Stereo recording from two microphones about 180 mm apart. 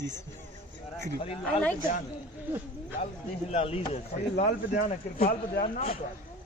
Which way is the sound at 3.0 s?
35° left (ahead or behind).